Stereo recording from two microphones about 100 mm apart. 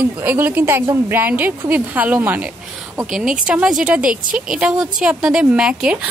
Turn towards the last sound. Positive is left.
turn(degrees=-10)  # may be behind; listen again after turning